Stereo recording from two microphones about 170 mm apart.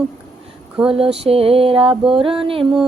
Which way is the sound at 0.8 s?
35° right (ahead or behind).